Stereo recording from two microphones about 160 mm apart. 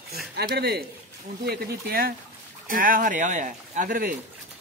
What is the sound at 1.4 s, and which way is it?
Speech, 90° right.